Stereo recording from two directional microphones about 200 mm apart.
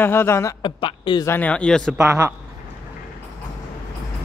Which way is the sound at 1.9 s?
15° right (ahead or behind).